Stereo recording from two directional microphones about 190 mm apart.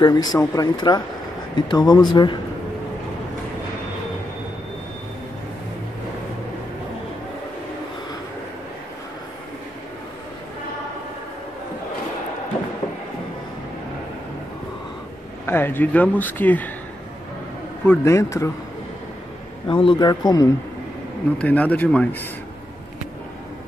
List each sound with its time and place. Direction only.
0.0 s speech: 20° left (ahead or behind)
15.4 s speech: 10° left (ahead or behind)
17.8 s speech: 15° left (ahead or behind)
19.7 s speech: 25° left (ahead or behind)
21.4 s speech: 10° left (ahead or behind)